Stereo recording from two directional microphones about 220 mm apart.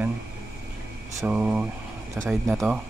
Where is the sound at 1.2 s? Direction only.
5° right (ahead or behind).